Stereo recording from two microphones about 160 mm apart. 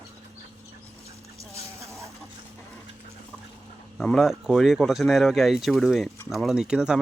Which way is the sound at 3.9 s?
Centre (ahead or behind).